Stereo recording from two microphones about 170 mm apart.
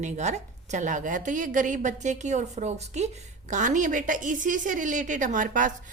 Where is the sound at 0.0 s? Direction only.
45° right (ahead or behind).